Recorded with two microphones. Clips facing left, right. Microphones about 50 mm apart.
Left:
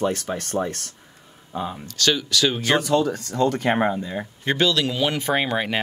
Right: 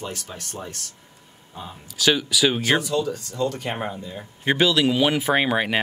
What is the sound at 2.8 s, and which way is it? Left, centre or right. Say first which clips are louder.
Speech: left 4 dB; left.